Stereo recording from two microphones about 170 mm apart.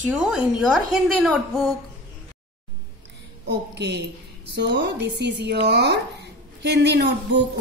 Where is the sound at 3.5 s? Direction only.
80° right.